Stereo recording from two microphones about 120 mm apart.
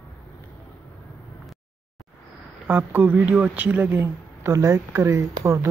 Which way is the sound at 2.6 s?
15° right (ahead or behind).